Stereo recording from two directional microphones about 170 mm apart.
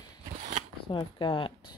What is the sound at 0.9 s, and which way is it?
Speech, 30° left (ahead or behind).